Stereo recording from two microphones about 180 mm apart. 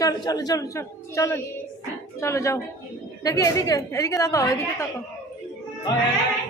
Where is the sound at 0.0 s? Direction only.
20° left (ahead or behind).